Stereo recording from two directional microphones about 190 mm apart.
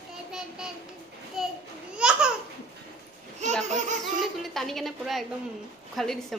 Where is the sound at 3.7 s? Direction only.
40° right (ahead or behind).